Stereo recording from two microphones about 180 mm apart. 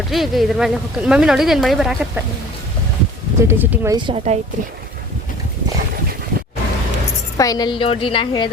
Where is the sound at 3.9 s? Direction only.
25° right (ahead or behind).